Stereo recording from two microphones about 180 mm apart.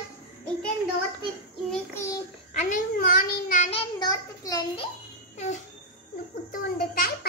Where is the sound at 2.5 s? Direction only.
40° left (ahead or behind).